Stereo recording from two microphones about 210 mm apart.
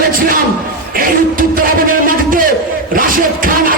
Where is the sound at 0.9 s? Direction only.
40° right (ahead or behind).